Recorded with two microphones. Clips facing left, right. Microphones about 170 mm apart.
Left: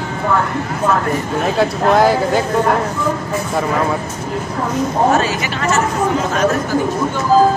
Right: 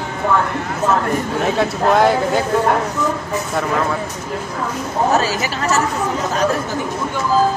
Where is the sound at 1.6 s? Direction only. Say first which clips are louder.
Left 2 dB; centre (ahead or behind).